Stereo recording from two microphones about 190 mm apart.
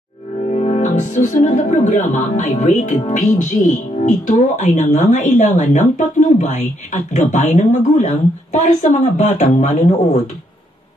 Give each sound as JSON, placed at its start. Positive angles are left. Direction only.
{"t": 0.5, "sound": "speech", "side_deg": 35}